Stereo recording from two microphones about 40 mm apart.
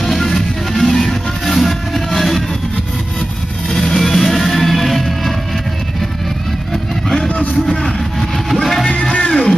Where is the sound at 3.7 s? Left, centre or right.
Centre.